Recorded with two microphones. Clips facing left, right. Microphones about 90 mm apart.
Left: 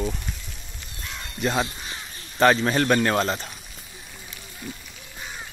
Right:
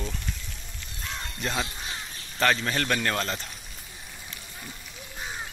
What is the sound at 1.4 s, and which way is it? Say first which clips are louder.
A man's voice: left 7 dB; 20° left (ahead or behind).